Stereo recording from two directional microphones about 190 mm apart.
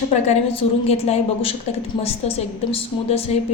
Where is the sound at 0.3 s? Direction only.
35° left (ahead or behind).